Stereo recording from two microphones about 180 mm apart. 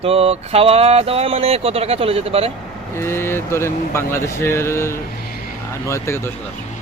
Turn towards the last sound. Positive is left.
turn(degrees=15)  # may be behind; listen again after turning